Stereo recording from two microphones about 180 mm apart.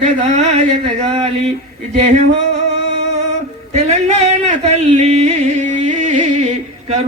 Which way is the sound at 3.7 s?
40° right (ahead or behind).